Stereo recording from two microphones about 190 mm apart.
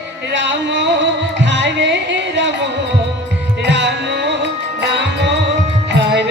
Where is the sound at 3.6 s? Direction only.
70° right (ahead or behind).